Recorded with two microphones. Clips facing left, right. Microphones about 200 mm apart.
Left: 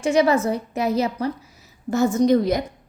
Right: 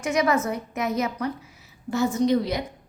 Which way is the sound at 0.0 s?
30° left (ahead or behind).